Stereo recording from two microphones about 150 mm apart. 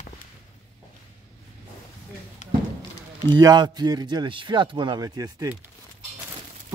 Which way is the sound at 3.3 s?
25° right (ahead or behind).